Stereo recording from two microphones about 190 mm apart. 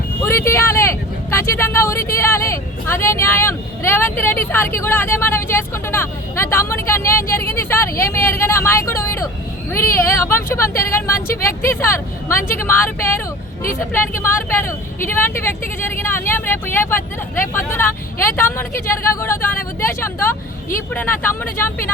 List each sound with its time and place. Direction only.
0.2 s speech: 15° left (ahead or behind)